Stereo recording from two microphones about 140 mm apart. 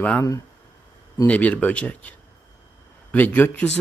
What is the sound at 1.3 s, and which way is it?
A man's voice, 10° left (ahead or behind).